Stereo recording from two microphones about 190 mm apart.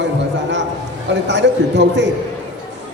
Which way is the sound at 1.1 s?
65° right (ahead or behind).